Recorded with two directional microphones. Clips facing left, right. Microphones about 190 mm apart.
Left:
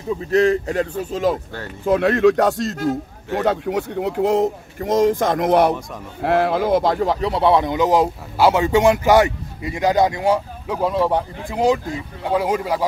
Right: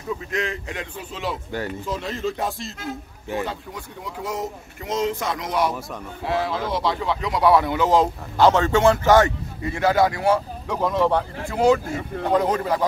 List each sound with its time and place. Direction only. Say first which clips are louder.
0.3 s speech: left 11 dB; 40° left (ahead or behind)
1.9 s speech: left 16 dB; 65° left (ahead or behind); by 12.8 s 10° left (ahead or behind)